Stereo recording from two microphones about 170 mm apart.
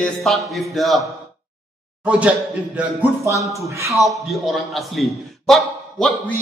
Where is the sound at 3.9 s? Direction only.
Centre (ahead or behind).